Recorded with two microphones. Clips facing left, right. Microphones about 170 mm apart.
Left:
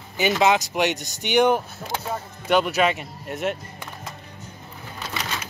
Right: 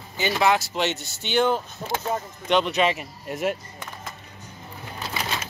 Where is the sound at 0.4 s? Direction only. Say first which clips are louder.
Left 1 dB; 20° left (ahead or behind); by 3.5 s centre (ahead or behind).